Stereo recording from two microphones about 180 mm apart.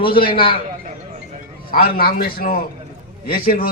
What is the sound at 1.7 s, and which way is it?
A man's voice, 60° left (ahead or behind).